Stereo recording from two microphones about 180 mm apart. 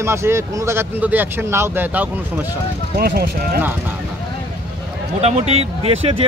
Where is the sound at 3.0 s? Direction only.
60° right (ahead or behind).